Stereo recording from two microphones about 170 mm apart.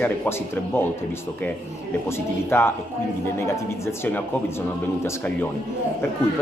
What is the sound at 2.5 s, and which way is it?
Speech, 15° left (ahead or behind).